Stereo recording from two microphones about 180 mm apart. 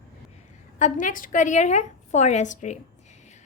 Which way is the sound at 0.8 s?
45° left (ahead or behind).